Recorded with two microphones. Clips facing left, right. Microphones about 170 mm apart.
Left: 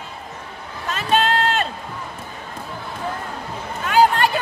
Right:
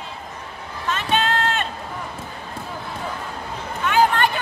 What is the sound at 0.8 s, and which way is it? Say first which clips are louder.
Run: left 2 dB; 40° left (ahead or behind).